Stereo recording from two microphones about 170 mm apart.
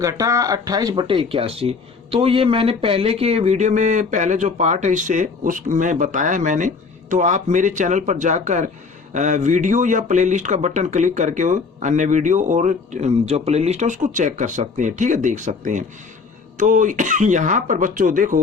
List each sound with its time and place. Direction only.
0.0 s speech: 20° right (ahead or behind); by 18.3 s 50° right (ahead or behind)